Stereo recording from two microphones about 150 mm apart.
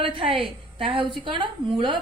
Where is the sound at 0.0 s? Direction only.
35° right (ahead or behind).